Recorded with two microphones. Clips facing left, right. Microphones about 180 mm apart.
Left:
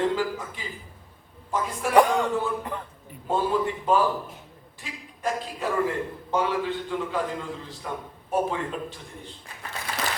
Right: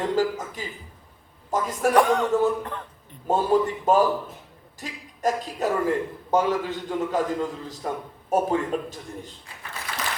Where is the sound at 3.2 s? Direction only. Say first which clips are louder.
Right 4 dB; 40° right (ahead or behind).